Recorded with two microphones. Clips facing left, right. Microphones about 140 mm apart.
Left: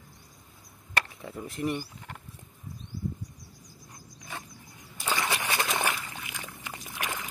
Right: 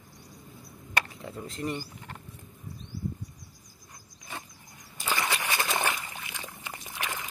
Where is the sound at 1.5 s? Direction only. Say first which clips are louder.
Left 3 dB; 15° left (ahead or behind).